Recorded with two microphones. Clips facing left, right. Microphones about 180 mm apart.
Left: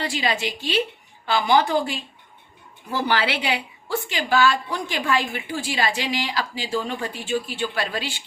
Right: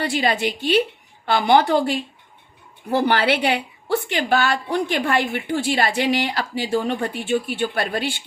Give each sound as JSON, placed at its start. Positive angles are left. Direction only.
{"t": 0.0, "sound": "speech", "side_deg": -55}
{"t": 3.1, "sound": "speech", "side_deg": -55}